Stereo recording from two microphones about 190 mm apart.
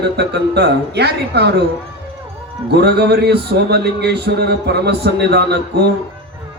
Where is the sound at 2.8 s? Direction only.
60° right (ahead or behind).